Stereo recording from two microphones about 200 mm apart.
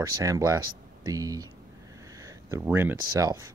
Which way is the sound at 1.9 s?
15° right (ahead or behind).